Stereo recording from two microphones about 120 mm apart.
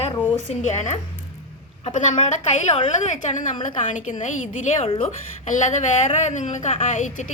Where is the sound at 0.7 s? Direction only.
80° left.